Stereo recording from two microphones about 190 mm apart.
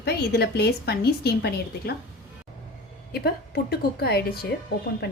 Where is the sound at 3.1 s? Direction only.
55° left (ahead or behind).